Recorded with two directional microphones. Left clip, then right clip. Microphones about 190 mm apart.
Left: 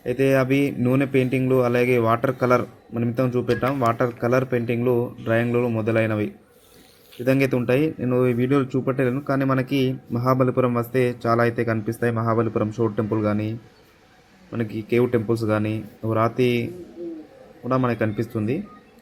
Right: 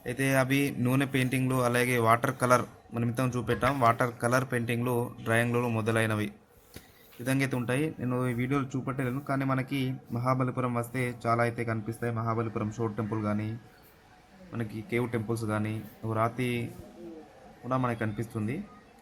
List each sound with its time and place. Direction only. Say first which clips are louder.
0.0 s speech: left 8 dB; 10° right (ahead or behind)
14.5 s speech: left 10 dB; centre (ahead or behind)
17.7 s speech: left 8 dB; centre (ahead or behind)